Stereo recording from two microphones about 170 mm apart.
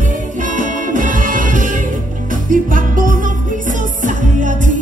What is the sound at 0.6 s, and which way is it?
Music, 50° right (ahead or behind).